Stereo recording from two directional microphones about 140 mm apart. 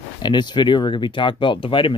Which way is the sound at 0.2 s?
30° left (ahead or behind).